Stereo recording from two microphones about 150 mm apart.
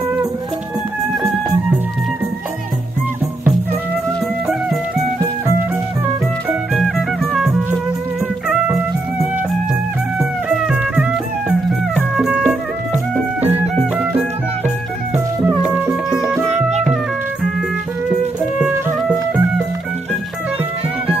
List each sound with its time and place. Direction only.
6.7 s music: centre (ahead or behind)
15.1 s music: 10° right (ahead or behind)
16.4 s music: 50° right (ahead or behind)
16.8 s music: 5° right (ahead or behind)